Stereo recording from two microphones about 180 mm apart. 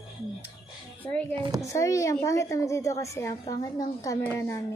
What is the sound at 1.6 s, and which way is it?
A woman's voice, 15° left (ahead or behind).